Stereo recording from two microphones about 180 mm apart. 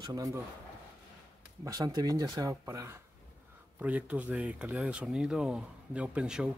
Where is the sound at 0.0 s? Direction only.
20° right (ahead or behind).